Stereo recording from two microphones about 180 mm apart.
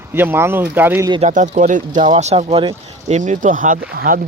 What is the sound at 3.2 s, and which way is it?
Speech, 45° right (ahead or behind).